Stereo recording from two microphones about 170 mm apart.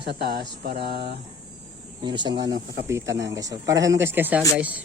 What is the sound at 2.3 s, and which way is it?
Speech, 85° right.